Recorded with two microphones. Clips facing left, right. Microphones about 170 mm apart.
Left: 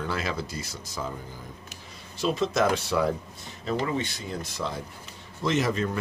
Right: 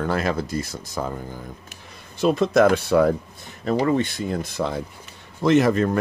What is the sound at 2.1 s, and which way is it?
Speech, 55° right (ahead or behind).